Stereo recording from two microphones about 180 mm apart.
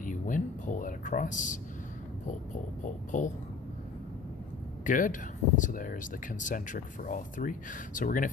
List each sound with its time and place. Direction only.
0.0 s a sound: 45° left (ahead or behind)
2.8 s speech: 45° left (ahead or behind)
4.8 s speech: 50° left (ahead or behind)